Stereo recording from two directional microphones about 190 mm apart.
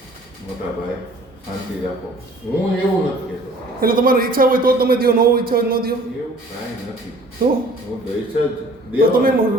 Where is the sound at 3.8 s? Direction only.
50° right (ahead or behind).